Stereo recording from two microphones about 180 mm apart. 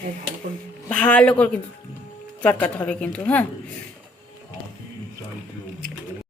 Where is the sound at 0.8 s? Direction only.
5° left (ahead or behind).